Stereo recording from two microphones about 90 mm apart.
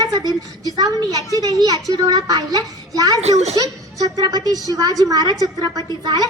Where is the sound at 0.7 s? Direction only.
50° right (ahead or behind).